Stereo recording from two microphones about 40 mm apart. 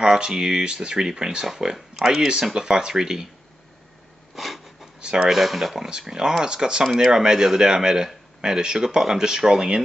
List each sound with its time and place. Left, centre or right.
0.0 s speech: centre
4.4 s a sound: centre
5.0 s speech: right
5.3 s speech: centre
5.9 s speech: centre